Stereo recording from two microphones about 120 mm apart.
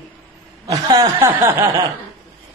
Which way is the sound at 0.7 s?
30° right (ahead or behind).